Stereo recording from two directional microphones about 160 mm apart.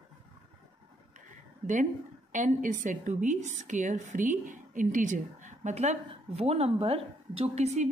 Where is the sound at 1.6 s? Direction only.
50° right (ahead or behind).